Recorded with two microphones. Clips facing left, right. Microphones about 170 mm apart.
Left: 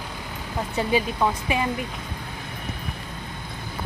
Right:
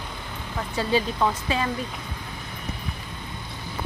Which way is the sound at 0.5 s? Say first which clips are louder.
Left 1 dB; 20° left (ahead or behind).